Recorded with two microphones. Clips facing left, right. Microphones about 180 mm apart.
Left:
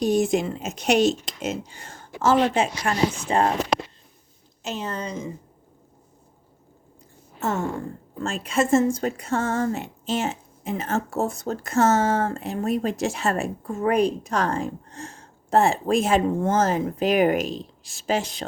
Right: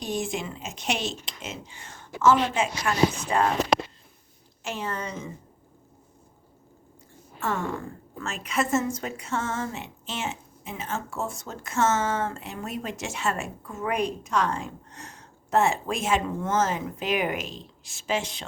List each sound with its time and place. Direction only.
0.0 s a woman's voice: 40° left (ahead or behind)
4.6 s a woman's voice: 20° left (ahead or behind)
7.3 s a woman's voice: 25° left (ahead or behind)